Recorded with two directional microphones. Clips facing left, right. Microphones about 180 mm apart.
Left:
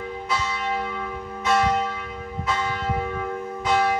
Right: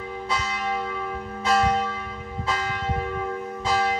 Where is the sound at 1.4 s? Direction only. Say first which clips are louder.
Even; 30° right (ahead or behind).